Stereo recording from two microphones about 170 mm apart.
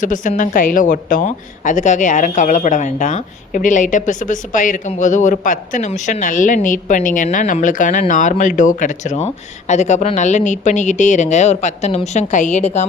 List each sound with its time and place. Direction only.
0.0 s a woman's voice: 50° left (ahead or behind)